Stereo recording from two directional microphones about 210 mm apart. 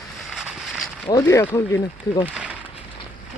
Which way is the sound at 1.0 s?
15° left (ahead or behind).